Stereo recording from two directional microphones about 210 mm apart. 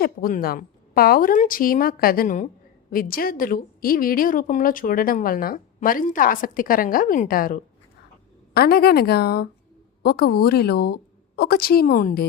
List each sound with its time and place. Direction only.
0.0 s a woman's voice: 45° left (ahead or behind)